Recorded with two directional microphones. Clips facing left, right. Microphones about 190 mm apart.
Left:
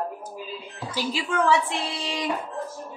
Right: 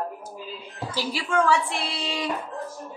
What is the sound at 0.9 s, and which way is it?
A woman's voice, 15° left (ahead or behind).